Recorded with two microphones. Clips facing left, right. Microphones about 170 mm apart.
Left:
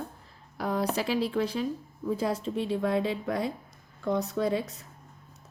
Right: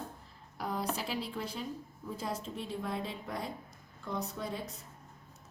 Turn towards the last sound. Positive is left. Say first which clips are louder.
# left 11 dB
turn(degrees=80)